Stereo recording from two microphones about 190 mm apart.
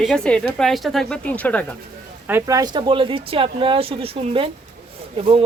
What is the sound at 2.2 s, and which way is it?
Speech, 15° right (ahead or behind).